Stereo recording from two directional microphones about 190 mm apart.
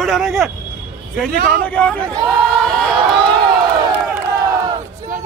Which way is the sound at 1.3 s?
50° right (ahead or behind).